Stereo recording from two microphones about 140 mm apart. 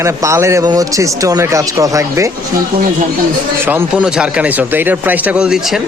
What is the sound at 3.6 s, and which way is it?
A man's voice, 10° right (ahead or behind).